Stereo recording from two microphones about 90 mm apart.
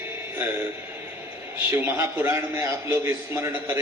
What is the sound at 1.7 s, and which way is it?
A man's voice, 25° right (ahead or behind).